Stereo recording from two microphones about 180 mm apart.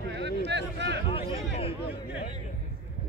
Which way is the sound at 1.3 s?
30° left (ahead or behind).